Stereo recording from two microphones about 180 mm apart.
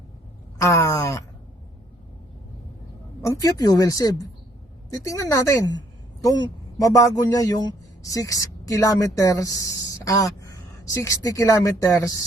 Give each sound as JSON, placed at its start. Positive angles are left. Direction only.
{"t": 0.6, "sound": "a woman's voice", "side_deg": 15}
{"t": 3.2, "sound": "a man's voice", "side_deg": 20}
{"t": 6.7, "sound": "a man's voice", "side_deg": 20}